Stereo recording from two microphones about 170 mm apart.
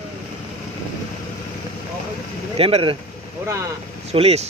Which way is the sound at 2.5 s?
35° right (ahead or behind).